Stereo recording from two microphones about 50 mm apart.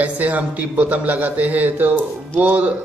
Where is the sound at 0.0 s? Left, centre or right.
Right.